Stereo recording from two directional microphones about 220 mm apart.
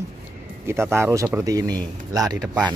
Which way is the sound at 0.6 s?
10° right (ahead or behind).